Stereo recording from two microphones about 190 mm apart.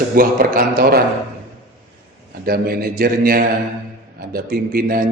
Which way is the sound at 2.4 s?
50° right (ahead or behind).